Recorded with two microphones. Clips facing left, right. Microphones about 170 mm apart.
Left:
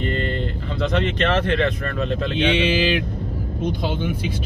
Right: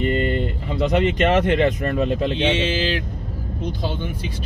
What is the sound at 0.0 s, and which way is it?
Speech, 10° right (ahead or behind).